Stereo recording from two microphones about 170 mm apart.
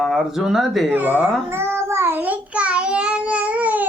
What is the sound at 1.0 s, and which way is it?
Child singing, 10° right (ahead or behind).